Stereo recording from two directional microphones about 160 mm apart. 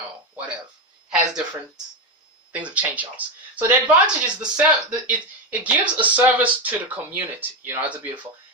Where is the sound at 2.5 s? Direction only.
10° right (ahead or behind).